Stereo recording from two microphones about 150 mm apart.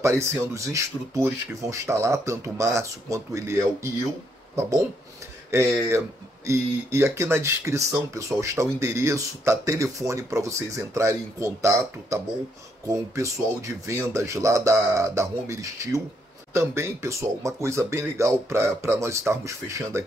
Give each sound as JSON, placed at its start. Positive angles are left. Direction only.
{"t": 0.0, "sound": "speech", "side_deg": -20}